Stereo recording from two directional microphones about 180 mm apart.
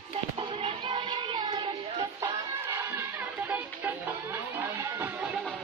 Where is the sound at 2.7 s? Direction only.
15° right (ahead or behind).